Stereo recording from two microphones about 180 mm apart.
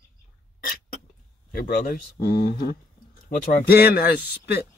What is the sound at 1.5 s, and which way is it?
Speech, 50° left (ahead or behind).